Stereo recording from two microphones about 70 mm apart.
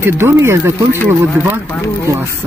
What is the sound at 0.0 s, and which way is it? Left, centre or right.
Speech, right.